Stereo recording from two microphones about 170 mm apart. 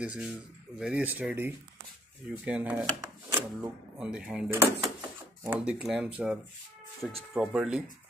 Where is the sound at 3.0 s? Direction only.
15° right (ahead or behind).